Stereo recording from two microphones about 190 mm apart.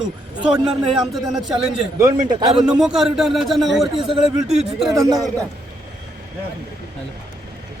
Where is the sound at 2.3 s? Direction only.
25° right (ahead or behind).